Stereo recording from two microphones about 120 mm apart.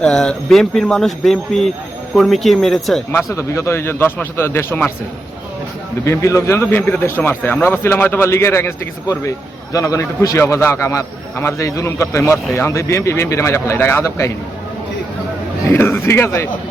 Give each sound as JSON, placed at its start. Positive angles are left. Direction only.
{"t": 0.0, "sound": "speech", "side_deg": 5}
{"t": 3.1, "sound": "speech", "side_deg": 20}
{"t": 6.1, "sound": "speech", "side_deg": 25}
{"t": 15.7, "sound": "speech", "side_deg": 20}